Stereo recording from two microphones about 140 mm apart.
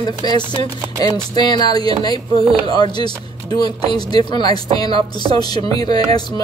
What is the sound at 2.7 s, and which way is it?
Speech, 30° left (ahead or behind).